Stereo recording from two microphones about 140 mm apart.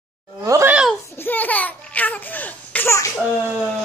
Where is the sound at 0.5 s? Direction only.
20° right (ahead or behind).